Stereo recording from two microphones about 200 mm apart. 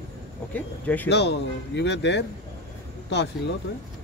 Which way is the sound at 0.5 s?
10° left (ahead or behind).